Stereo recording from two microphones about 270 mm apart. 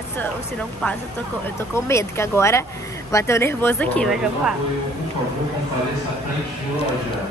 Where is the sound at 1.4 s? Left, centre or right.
Centre.